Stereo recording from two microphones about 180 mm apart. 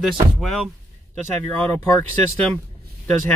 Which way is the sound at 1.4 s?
15° left (ahead or behind).